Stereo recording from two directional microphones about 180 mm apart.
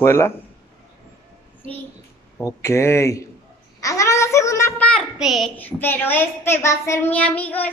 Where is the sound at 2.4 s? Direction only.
15° left (ahead or behind).